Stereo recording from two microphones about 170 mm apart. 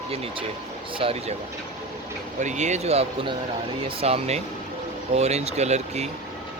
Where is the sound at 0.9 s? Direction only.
35° right (ahead or behind).